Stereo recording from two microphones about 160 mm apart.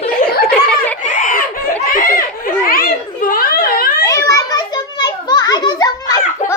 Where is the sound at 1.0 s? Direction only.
55° left (ahead or behind).